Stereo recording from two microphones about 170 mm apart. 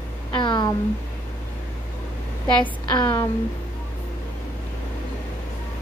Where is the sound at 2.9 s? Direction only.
25° left (ahead or behind).